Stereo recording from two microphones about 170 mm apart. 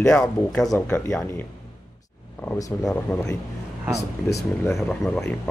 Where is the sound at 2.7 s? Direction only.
10° left (ahead or behind).